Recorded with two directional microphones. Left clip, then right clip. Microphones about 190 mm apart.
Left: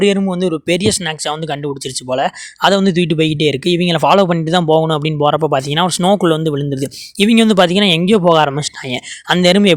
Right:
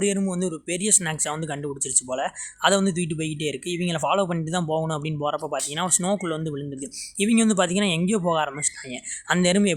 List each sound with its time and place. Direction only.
0.0 s speech: 40° left (ahead or behind)